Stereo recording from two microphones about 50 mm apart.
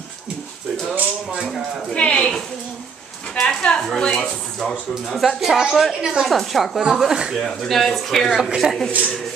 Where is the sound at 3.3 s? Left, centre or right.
Centre.